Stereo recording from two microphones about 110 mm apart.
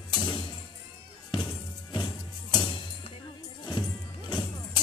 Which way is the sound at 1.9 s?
45° left (ahead or behind).